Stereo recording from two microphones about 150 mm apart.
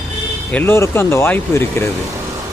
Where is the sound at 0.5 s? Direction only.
15° left (ahead or behind).